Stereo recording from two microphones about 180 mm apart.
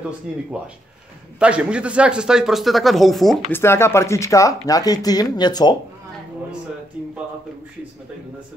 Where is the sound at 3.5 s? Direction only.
15° left (ahead or behind).